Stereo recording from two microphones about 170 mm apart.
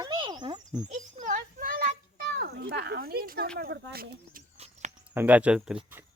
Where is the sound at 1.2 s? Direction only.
50° right (ahead or behind).